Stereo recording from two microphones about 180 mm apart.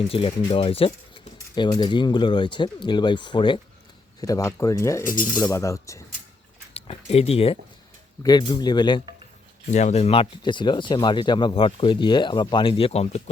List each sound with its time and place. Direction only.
0.1 s speech: 30° left (ahead or behind)
6.7 s speech: 35° left (ahead or behind)
8.2 s speech: 20° left (ahead or behind)
9.6 s speech: 40° left (ahead or behind)